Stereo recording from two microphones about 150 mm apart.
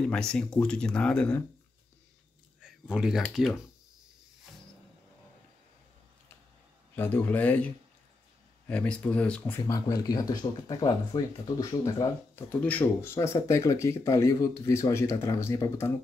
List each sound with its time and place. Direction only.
0.0 s speech: 5° left (ahead or behind)
2.6 s speech: 5° right (ahead or behind)
7.0 s speech: 10° left (ahead or behind)
9.7 s speech: 20° left (ahead or behind)
12.4 s speech: 10° left (ahead or behind)